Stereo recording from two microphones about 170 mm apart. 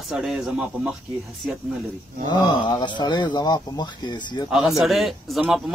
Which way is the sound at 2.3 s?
25° left (ahead or behind).